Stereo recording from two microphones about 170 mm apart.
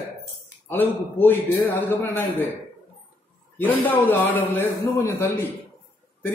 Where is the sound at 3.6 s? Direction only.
10° left (ahead or behind).